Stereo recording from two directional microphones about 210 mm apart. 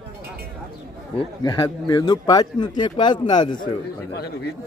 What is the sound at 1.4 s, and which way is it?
Speech, 20° left (ahead or behind).